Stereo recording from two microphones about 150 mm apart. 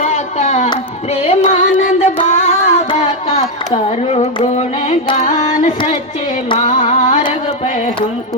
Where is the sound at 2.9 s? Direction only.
50° left (ahead or behind).